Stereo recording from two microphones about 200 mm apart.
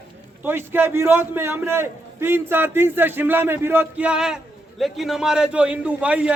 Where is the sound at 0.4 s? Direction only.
10° right (ahead or behind).